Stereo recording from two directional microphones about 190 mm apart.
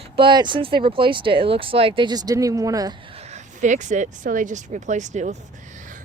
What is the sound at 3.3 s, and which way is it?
Speech, 40° right (ahead or behind).